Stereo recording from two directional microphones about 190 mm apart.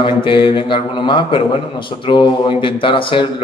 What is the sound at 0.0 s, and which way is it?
A man's voice, 25° left (ahead or behind).